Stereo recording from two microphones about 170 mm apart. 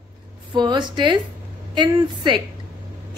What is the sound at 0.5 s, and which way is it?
A woman's voice, 25° right (ahead or behind).